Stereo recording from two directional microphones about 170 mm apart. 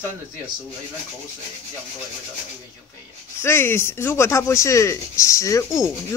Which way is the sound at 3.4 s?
15° left (ahead or behind).